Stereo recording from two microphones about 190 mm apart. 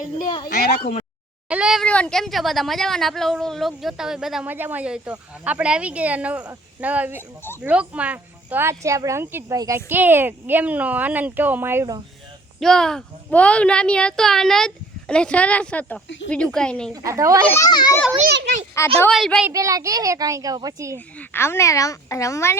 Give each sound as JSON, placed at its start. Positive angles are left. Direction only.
{"t": 1.5, "sound": "speech", "side_deg": -5}
{"t": 12.5, "sound": "speech", "side_deg": 5}
{"t": 16.9, "sound": "speech", "side_deg": -15}
{"t": 17.4, "sound": "a child's voice", "side_deg": 15}
{"t": 18.3, "sound": "children playing", "side_deg": -60}
{"t": 18.8, "sound": "a woman's voice", "side_deg": 15}
{"t": 19.1, "sound": "speech", "side_deg": 0}
{"t": 19.5, "sound": "speech", "side_deg": -15}
{"t": 20.9, "sound": "speech", "side_deg": 10}